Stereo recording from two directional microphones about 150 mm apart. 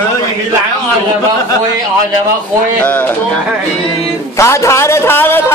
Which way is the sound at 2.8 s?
10° left (ahead or behind).